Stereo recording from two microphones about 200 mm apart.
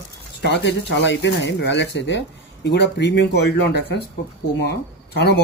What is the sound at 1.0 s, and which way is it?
Speech, 65° left (ahead or behind).